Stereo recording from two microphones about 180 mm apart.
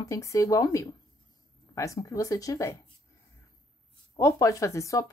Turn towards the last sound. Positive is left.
turn(degrees=15)  # may be behind; listen again after turning